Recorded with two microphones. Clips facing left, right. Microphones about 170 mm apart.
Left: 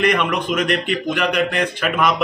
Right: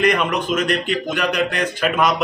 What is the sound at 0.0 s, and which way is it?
Speech, 35° right (ahead or behind).